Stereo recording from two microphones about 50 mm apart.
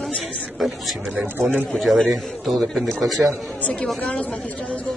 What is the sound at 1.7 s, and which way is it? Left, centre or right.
A man's voice, centre.